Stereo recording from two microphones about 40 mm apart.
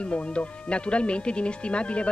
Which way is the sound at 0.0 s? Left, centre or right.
Left.